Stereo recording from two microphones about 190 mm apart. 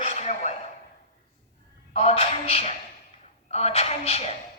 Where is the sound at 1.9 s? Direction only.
30° left (ahead or behind).